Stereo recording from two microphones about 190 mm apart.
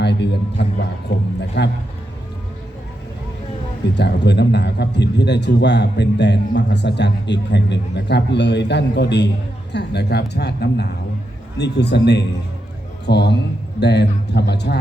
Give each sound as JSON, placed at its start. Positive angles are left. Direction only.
{"t": 0.0, "sound": "a man's voice", "side_deg": 65}
{"t": 3.9, "sound": "a man's voice", "side_deg": 65}